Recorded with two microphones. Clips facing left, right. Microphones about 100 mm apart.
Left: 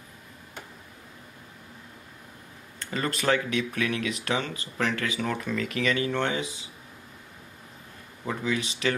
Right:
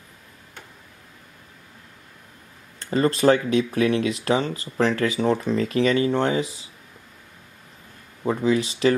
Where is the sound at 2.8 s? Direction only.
30° right (ahead or behind).